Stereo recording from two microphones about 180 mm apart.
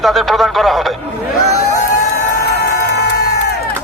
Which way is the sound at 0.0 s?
Centre (ahead or behind).